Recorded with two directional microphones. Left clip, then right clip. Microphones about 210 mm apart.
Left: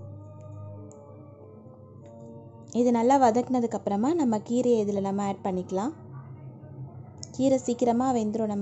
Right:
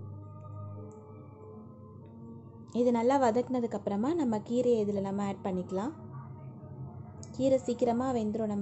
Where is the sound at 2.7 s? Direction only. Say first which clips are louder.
Left 5 dB; 15° left (ahead or behind).